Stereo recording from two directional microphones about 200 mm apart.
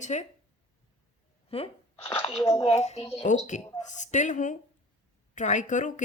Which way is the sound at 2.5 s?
30° left (ahead or behind).